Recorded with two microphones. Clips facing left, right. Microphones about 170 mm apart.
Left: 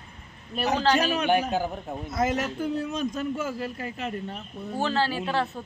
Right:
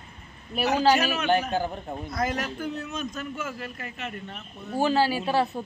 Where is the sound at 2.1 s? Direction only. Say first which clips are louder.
Left 3 dB; 25° left (ahead or behind).